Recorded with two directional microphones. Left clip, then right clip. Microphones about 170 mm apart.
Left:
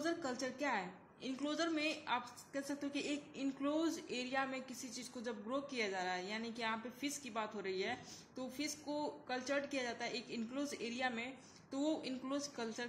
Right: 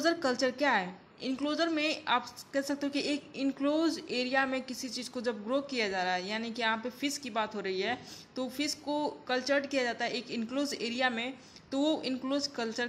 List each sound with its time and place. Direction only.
0.0 s a woman's voice: 30° right (ahead or behind)